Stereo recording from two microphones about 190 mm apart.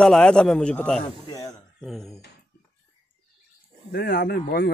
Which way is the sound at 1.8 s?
Centre (ahead or behind).